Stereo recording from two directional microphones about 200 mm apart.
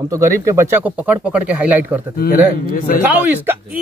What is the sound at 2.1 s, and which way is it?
Speech, 45° left (ahead or behind).